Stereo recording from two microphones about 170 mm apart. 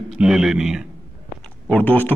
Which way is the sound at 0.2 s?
5° right (ahead or behind).